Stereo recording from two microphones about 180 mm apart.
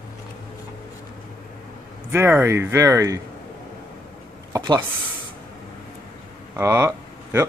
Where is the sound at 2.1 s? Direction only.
10° right (ahead or behind).